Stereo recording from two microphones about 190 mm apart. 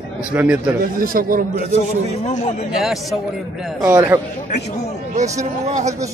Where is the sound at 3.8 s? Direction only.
10° right (ahead or behind).